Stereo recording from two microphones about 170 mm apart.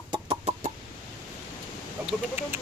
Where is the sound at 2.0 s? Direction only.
10° right (ahead or behind).